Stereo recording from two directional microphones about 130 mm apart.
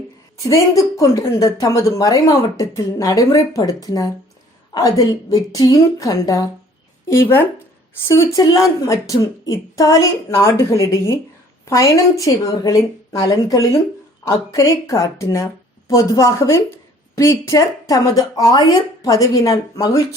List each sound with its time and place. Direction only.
0.4 s a woman's voice: 25° left (ahead or behind)